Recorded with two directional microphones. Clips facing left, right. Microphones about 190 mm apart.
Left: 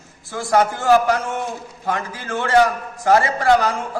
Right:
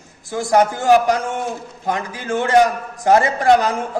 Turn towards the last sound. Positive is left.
turn(degrees=-20)  # may be behind; listen again after turning